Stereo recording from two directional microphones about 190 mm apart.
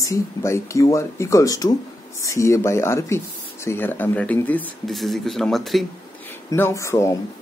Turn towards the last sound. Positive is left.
turn(degrees=15)  # may be behind; listen again after turning